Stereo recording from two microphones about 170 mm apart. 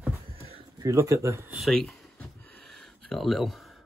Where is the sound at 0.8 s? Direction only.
20° right (ahead or behind).